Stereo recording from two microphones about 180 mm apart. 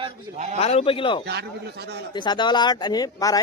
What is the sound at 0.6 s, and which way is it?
Speech, 35° left (ahead or behind).